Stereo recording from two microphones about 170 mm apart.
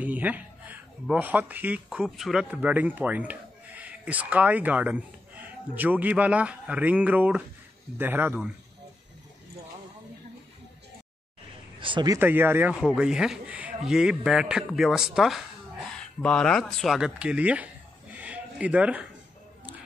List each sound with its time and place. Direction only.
0.0 s speech: 10° right (ahead or behind)
11.8 s speech: 25° right (ahead or behind)
12.2 s a man's voice: 10° right (ahead or behind)
18.1 s a sound: 10° right (ahead or behind)